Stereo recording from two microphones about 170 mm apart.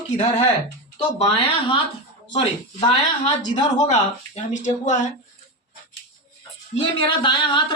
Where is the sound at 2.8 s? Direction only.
30° left (ahead or behind); by 5.1 s 45° left (ahead or behind).